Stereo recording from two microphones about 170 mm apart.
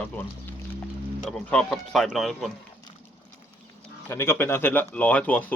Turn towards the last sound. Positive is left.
turn(degrees=10)  # may be behind; listen again after turning